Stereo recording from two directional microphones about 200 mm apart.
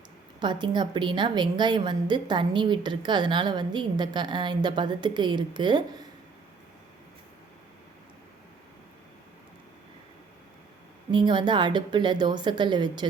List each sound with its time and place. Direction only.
0.3 s a woman's voice: 20° right (ahead or behind)
11.1 s a woman's voice: 25° right (ahead or behind)